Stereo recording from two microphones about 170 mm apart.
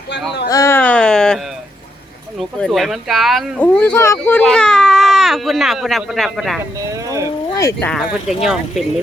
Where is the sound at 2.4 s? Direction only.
Centre (ahead or behind).